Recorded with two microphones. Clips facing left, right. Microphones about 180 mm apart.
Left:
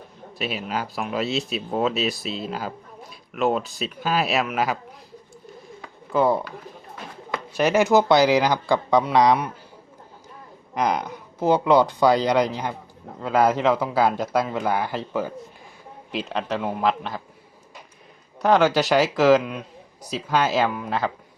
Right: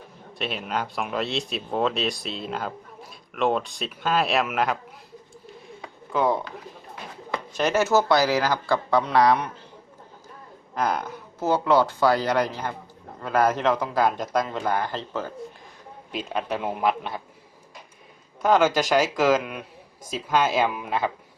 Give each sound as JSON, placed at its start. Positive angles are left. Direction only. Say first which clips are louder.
{"t": 0.3, "sound": "speech", "louder": "left 1 dB", "side_deg": 5}
{"t": 6.1, "sound": "speech", "louder": "left 3 dB", "side_deg": 5}
{"t": 7.5, "sound": "speech", "louder": "left 3 dB", "side_deg": 10}
{"t": 10.8, "sound": "speech", "louder": "left 2 dB", "side_deg": 15}
{"t": 16.3, "sound": "a man's voice", "louder": "left 1 dB", "side_deg": -10}
{"t": 18.4, "sound": "speech", "louder": "left 2 dB", "side_deg": 0}
{"t": 20.0, "sound": "speech", "louder": "left 2 dB", "side_deg": -50}
{"t": 20.2, "sound": "speech", "louder": "even", "side_deg": 0}
{"t": 20.7, "sound": "a man's voice", "louder": "left 1 dB", "side_deg": -15}